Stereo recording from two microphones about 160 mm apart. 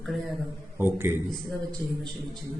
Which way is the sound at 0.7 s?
15° right (ahead or behind).